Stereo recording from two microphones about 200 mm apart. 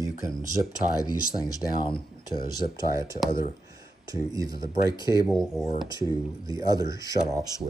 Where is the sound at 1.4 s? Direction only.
25° left (ahead or behind).